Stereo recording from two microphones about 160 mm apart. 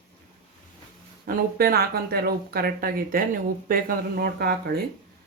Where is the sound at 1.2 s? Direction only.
70° right (ahead or behind).